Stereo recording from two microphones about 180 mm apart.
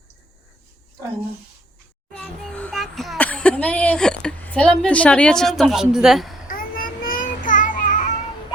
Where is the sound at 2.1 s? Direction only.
5° left (ahead or behind).